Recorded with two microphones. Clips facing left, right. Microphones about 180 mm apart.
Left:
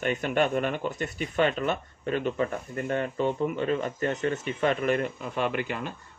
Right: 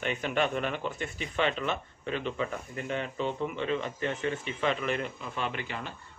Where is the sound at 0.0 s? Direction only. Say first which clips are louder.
Left 4 dB; 45° left (ahead or behind).